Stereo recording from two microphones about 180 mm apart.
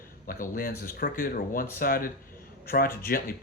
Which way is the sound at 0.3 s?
50° left (ahead or behind).